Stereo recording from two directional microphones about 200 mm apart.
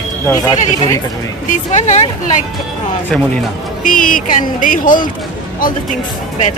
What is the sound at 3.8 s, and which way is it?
Speech, 40° left (ahead or behind).